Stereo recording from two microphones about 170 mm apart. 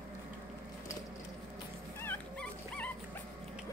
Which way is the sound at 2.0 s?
10° left (ahead or behind).